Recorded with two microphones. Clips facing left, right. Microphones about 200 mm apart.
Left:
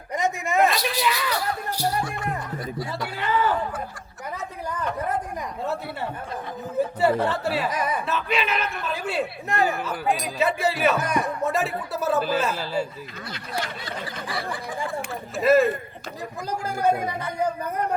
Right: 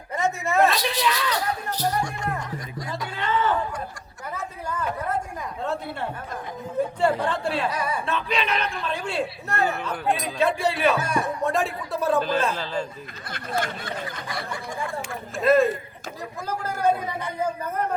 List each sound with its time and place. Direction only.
0.1 s a sound: 15° left (ahead or behind)
0.6 s music: centre (ahead or behind)
2.7 s a sound: 5° left (ahead or behind)
6.7 s speech: 5° left (ahead or behind)
7.7 s speech: 20° left (ahead or behind)
8.0 s speech: 5° left (ahead or behind)
13.3 s speech: 50° right (ahead or behind)
15.4 s speech: centre (ahead or behind)
16.5 s speech: 15° left (ahead or behind)